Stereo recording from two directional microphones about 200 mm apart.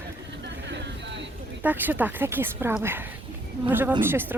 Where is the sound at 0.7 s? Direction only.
60° right (ahead or behind).